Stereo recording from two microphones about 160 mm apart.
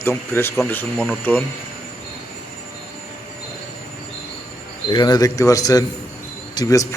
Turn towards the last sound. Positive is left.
turn(degrees=20)  # may be behind; listen again after turning